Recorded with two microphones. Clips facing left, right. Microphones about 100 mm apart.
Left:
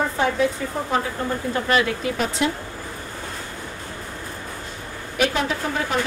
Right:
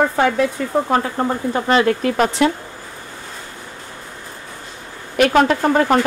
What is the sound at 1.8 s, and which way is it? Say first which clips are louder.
Speech: right 8 dB; 55° right (ahead or behind).